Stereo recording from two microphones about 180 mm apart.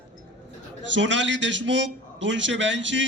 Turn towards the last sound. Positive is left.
turn(degrees=-90)